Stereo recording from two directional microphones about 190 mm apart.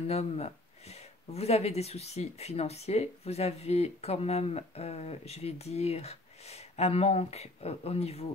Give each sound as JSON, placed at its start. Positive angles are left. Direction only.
{"t": 0.1, "sound": "speech", "side_deg": 35}